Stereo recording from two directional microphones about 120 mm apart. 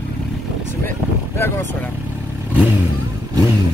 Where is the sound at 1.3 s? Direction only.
20° left (ahead or behind).